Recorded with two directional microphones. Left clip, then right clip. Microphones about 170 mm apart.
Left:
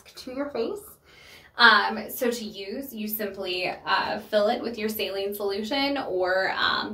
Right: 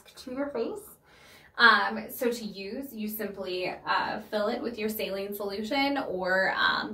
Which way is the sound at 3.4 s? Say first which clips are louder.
Left 4 dB; 15° left (ahead or behind).